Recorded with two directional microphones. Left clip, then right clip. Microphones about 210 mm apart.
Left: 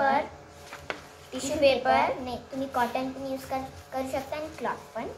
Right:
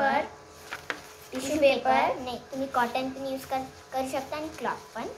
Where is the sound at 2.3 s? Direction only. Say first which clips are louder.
Right 1 dB; 15° right (ahead or behind).